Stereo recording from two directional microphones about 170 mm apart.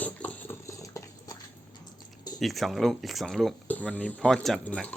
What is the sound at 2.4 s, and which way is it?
Speech, centre (ahead or behind).